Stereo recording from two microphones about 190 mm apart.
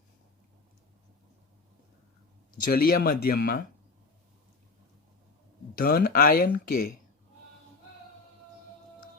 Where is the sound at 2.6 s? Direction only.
50° left (ahead or behind).